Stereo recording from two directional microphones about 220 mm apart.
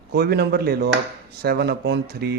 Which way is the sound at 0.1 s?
45° right (ahead or behind).